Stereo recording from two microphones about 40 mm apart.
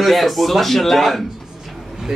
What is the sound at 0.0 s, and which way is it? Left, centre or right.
A man's voice, centre.